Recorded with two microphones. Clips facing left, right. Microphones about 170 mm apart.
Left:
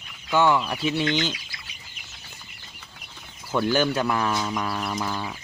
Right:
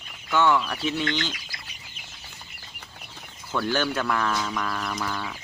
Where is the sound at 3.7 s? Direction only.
15° left (ahead or behind).